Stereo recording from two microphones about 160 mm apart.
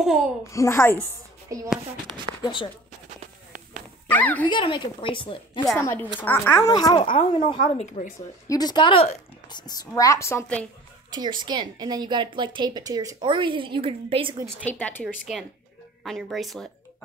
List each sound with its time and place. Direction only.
0.0 s speech: centre (ahead or behind)
0.5 s speech: 15° left (ahead or behind)
1.5 s a woman's voice: 20° right (ahead or behind)
2.4 s a woman's voice: 30° left (ahead or behind)
4.1 s a woman's voice: 10° left (ahead or behind)
4.5 s a woman's voice: 30° left (ahead or behind)
5.8 s speech: 15° left (ahead or behind)
7.0 s a woman's voice: 35° left (ahead or behind)
7.8 s speech: 45° left (ahead or behind)
8.5 s a woman's voice: 25° left (ahead or behind)
9.5 s a woman's voice: 25° left (ahead or behind)
11.1 s a woman's voice: 25° right (ahead or behind)
14.6 s speech: 10° left (ahead or behind)
16.0 s speech: centre (ahead or behind)